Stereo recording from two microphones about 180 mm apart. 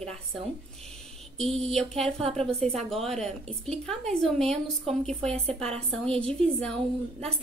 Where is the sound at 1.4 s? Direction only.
Centre (ahead or behind).